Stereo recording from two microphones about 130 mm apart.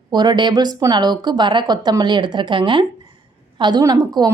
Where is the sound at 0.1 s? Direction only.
35° right (ahead or behind).